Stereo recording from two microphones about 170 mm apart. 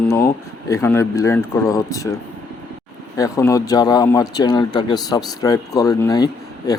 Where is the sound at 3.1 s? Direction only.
20° left (ahead or behind).